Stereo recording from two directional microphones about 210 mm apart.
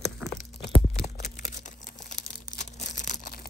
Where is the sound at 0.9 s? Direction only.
30° left (ahead or behind).